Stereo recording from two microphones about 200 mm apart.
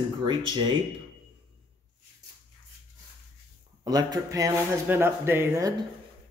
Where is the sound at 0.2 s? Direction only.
25° right (ahead or behind).